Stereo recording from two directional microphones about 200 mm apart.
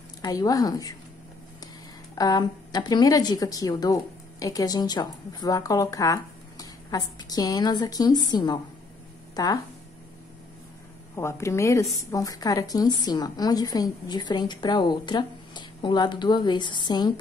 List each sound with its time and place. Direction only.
0.2 s a woman's voice: 20° left (ahead or behind)
2.1 s a woman's voice: 20° left (ahead or behind)
11.1 s a woman's voice: 15° left (ahead or behind)